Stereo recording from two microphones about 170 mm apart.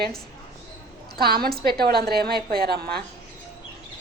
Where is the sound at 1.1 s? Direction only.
65° right (ahead or behind).